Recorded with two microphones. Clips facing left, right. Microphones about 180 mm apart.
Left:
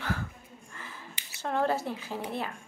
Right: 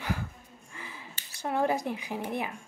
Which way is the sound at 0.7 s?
15° right (ahead or behind).